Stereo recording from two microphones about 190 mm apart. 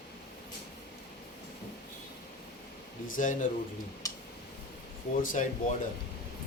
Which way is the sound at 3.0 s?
45° left (ahead or behind).